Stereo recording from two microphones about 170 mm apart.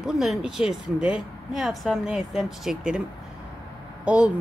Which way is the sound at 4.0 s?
5° right (ahead or behind).